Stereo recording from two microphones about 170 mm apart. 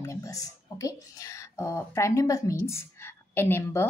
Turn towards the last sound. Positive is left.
turn(degrees=15)  # may be behind; listen again after turning